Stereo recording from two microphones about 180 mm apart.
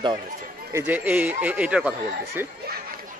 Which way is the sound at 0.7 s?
10° right (ahead or behind).